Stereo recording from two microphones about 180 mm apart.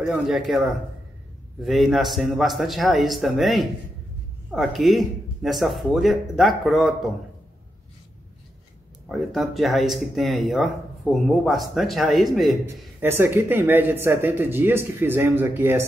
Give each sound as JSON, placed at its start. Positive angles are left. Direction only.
{"t": 0.3, "sound": "speech", "side_deg": 0}
{"t": 9.1, "sound": "speech", "side_deg": 0}
{"t": 13.0, "sound": "speech", "side_deg": -10}